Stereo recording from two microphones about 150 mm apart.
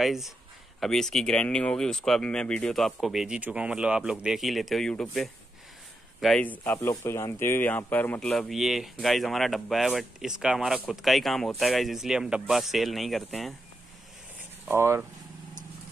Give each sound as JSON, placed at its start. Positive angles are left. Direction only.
{"t": 0.0, "sound": "speech", "side_deg": 0}
{"t": 14.7, "sound": "speech", "side_deg": -15}